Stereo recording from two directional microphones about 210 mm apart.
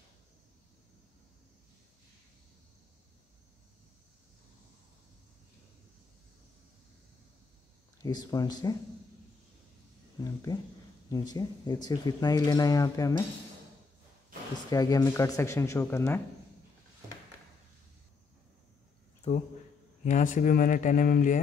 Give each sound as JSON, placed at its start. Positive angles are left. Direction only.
{"t": 8.0, "sound": "speech", "side_deg": 20}
{"t": 10.2, "sound": "speech", "side_deg": 20}
{"t": 14.7, "sound": "speech", "side_deg": 15}
{"t": 19.2, "sound": "speech", "side_deg": 30}